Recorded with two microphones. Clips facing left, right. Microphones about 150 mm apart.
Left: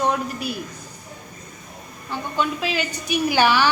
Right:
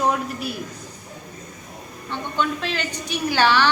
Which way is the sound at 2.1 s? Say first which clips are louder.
Even; 5° left (ahead or behind).